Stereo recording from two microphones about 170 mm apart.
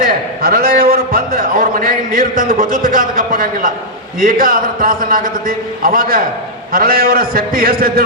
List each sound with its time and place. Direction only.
0.4 s a man's voice: 60° right (ahead or behind)